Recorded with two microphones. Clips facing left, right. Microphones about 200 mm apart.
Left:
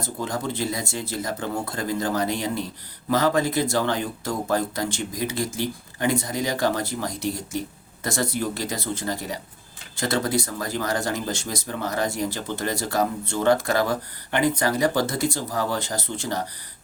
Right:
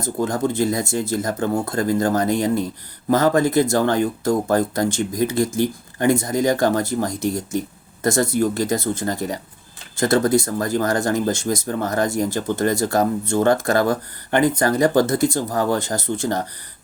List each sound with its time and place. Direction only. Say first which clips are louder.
0.0 s speech: right 7 dB; 45° right (ahead or behind)